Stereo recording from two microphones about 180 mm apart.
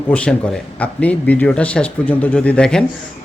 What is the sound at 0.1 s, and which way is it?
Speech, 5° left (ahead or behind).